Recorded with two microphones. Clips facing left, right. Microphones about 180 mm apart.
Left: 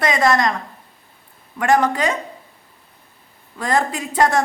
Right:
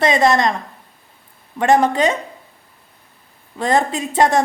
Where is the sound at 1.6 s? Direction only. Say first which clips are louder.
Right 3 dB; 25° right (ahead or behind).